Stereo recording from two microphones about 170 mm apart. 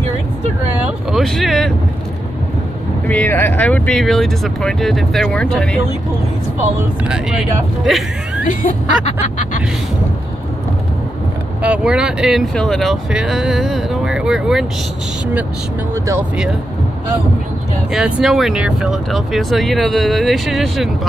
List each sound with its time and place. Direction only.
1.1 s speech: centre (ahead or behind)
3.1 s speech: 10° left (ahead or behind)
7.1 s speech: 5° right (ahead or behind)
8.5 s a sound: 50° left (ahead or behind)
11.6 s speech: 5° right (ahead or behind)
15.9 s speech: 15° right (ahead or behind)
17.9 s speech: centre (ahead or behind)